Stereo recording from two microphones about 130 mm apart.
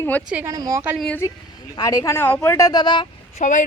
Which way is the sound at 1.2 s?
25° left (ahead or behind).